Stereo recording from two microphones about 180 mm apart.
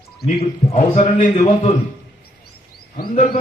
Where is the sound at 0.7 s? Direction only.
40° left (ahead or behind).